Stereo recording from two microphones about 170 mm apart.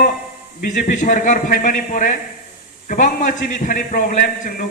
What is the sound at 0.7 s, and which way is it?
A man's voice, 45° left (ahead or behind).